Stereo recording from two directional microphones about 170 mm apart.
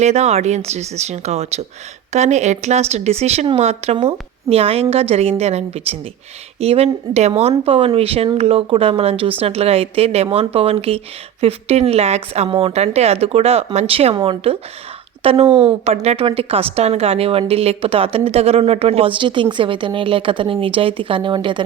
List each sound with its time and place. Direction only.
0.0 s speech: 40° right (ahead or behind)